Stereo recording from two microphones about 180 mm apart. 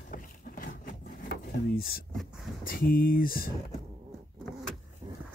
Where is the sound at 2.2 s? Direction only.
Centre (ahead or behind).